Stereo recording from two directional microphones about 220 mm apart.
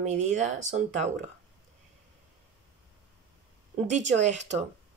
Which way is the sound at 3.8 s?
30° right (ahead or behind).